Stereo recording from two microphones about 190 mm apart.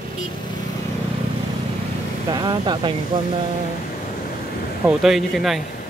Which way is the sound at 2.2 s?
25° right (ahead or behind).